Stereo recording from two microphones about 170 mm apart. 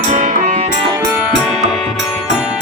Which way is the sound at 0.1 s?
45° right (ahead or behind).